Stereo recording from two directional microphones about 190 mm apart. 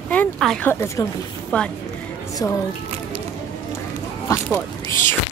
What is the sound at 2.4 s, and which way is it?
Speech, 20° left (ahead or behind).